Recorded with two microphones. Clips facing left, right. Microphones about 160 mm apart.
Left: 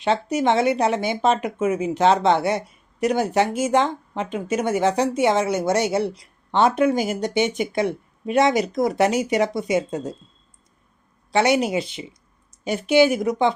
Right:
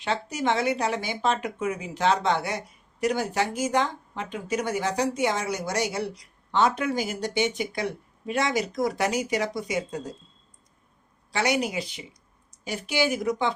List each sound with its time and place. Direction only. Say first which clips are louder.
0.0 s speech: left 7 dB; 20° left (ahead or behind)
11.3 s speech: left 7 dB; 25° left (ahead or behind)